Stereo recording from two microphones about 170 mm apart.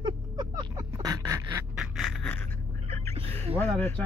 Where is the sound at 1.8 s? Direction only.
Centre (ahead or behind).